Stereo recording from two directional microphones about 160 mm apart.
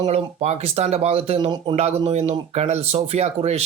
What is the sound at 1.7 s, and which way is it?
Speech, 40° right (ahead or behind).